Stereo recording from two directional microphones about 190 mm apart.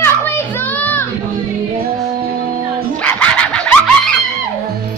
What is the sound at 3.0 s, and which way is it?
Music, 5° left (ahead or behind).